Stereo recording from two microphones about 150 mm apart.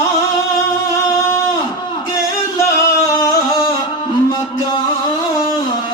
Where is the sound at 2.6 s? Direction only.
20° left (ahead or behind).